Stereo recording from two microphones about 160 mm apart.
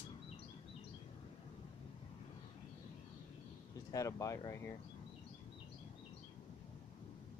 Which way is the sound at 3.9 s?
20° left (ahead or behind).